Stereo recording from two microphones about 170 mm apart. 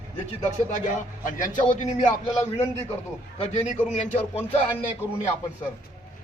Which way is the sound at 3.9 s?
35° left (ahead or behind).